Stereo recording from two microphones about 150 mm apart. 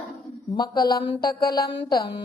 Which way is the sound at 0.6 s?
30° left (ahead or behind).